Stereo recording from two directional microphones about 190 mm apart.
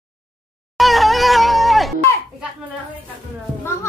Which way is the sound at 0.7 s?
Centre (ahead or behind).